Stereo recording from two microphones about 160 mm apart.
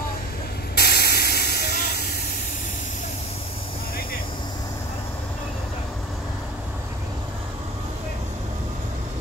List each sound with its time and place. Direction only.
0.7 s hiss: 85° left